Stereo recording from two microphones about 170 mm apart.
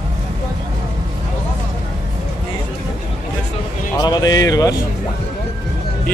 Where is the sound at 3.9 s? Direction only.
20° left (ahead or behind).